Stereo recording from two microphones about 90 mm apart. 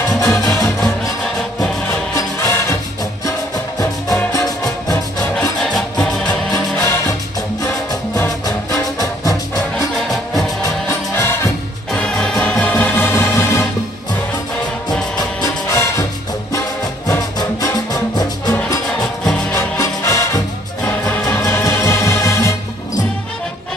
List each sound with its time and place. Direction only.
0.2 s music: 35° left (ahead or behind)
0.7 s music: 5° left (ahead or behind)
1.6 s music: 35° left (ahead or behind)
4.3 s music: 35° left (ahead or behind)
5.6 s music: 5° left (ahead or behind)
6.5 s music: 35° left (ahead or behind)
8.5 s music: 40° left (ahead or behind)
9.6 s music: 5° left (ahead or behind)
10.6 s music: 30° left (ahead or behind)
11.9 s music: 10° left (ahead or behind); by 13.7 s 30° left (ahead or behind)
15.1 s music: 40° left (ahead or behind)
17.4 s music: 40° left (ahead or behind)
19.5 s music: 35° left (ahead or behind)